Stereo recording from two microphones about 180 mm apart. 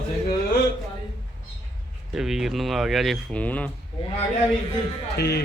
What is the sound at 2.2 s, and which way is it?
Speech, centre (ahead or behind).